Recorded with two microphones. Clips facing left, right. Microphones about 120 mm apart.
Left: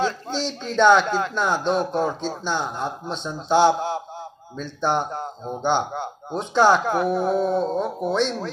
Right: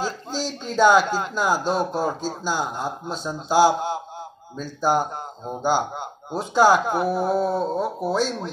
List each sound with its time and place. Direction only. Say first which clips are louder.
0.4 s speech: even; 5° right (ahead or behind)